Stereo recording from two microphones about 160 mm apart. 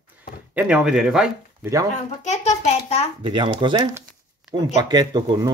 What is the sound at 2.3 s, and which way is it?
Speech, 45° left (ahead or behind).